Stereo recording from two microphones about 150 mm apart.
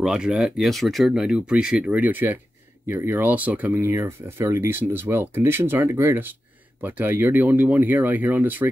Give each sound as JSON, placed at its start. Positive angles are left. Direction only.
{"t": 0.0, "sound": "speech", "side_deg": -5}